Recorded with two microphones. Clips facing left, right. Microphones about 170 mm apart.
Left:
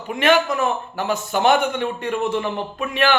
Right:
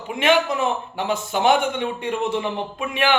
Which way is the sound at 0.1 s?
20° right (ahead or behind).